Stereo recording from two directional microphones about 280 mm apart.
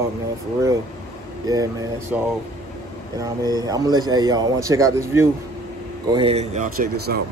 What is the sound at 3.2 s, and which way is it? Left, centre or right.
A man's voice, centre.